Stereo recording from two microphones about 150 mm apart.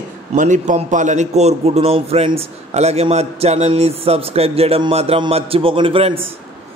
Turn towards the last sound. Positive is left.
turn(degrees=-35)  # may be behind; listen again after turning